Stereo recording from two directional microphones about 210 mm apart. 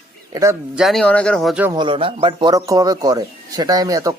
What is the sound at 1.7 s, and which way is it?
Speech, 25° right (ahead or behind).